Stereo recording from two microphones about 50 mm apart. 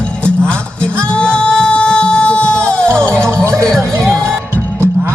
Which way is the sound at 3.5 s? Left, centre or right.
Centre.